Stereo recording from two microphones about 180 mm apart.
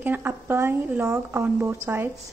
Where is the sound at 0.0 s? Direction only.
10° right (ahead or behind).